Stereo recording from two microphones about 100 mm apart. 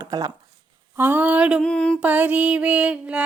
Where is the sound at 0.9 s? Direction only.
20° right (ahead or behind).